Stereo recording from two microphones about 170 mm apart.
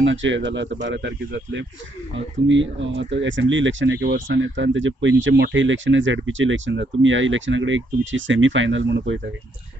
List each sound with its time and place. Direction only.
0.0 s speech: 90° right